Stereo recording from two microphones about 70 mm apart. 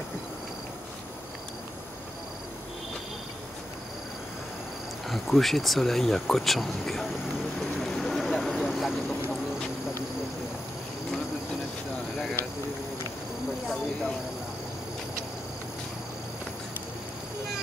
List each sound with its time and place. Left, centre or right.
5.0 s speech: centre
7.8 s bird: centre
8.5 s vehicle: centre